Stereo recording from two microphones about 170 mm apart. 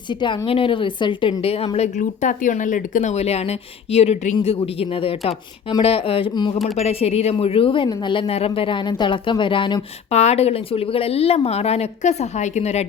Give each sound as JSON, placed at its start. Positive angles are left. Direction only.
{"t": 0.2, "sound": "a woman's voice", "side_deg": 30}
{"t": 2.0, "sound": "a woman's voice", "side_deg": 50}
{"t": 10.1, "sound": "a woman's voice", "side_deg": 40}